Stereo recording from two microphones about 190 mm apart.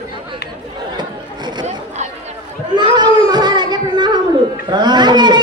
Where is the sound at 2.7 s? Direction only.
25° right (ahead or behind).